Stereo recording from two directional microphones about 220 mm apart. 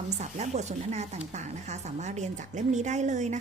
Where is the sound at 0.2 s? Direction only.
30° right (ahead or behind).